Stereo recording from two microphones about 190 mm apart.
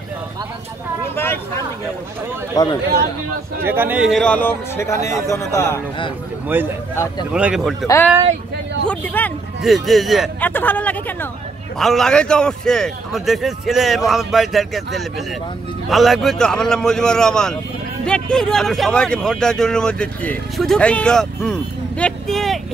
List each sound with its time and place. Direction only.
1.0 s a man's voice: 10° left (ahead or behind)
2.5 s speech: 20° left (ahead or behind)
3.6 s a man's voice: 10° right (ahead or behind); by 5.8 s 15° left (ahead or behind)
6.4 s speech: 10° right (ahead or behind)
7.8 s a man's voice: 15° left (ahead or behind)